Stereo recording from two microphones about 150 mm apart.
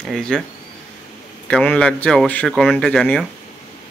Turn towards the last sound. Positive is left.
turn(degrees=5)  # may be behind; listen again after turning